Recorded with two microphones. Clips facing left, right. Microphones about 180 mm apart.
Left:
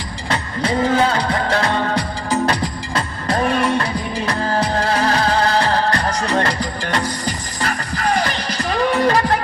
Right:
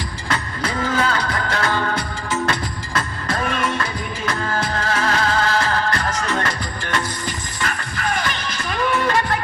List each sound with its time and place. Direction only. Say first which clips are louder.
0.3 s music: left 5 dB; 30° left (ahead or behind)